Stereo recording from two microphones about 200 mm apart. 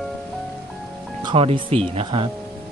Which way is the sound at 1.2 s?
25° right (ahead or behind).